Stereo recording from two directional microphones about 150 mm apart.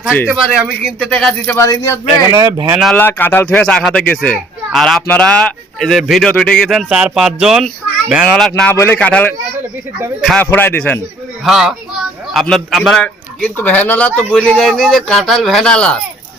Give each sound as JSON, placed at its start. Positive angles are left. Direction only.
{"t": 0.3, "sound": "speech", "side_deg": -10}
{"t": 0.9, "sound": "speech", "side_deg": 5}
{"t": 1.6, "sound": "speech", "side_deg": 20}
{"t": 2.3, "sound": "speech", "side_deg": -20}
{"t": 2.9, "sound": "a child's voice", "side_deg": 15}
{"t": 8.7, "sound": "speech", "side_deg": 15}
{"t": 10.4, "sound": "speech", "side_deg": 15}
{"t": 11.4, "sound": "a child's voice", "side_deg": 0}
{"t": 13.4, "sound": "a child's voice", "side_deg": 10}